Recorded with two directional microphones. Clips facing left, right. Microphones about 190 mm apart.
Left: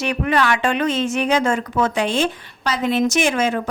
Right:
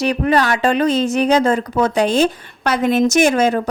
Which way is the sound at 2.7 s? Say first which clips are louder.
Right 4 dB; 50° right (ahead or behind).